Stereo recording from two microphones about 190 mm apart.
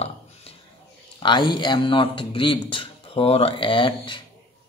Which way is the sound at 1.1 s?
25° left (ahead or behind).